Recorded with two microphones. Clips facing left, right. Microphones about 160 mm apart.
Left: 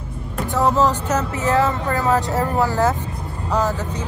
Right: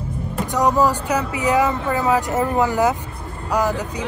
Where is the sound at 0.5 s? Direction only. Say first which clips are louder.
Even; 15° right (ahead or behind).